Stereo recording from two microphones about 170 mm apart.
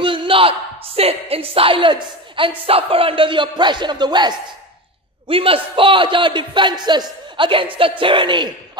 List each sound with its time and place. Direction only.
0.0 s a man's voice: 30° right (ahead or behind)
5.3 s a man's voice: 35° right (ahead or behind)